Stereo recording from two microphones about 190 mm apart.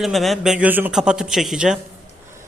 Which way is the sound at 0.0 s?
Centre (ahead or behind).